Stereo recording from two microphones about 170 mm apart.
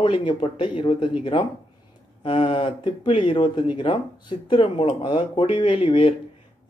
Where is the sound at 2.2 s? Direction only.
30° left (ahead or behind).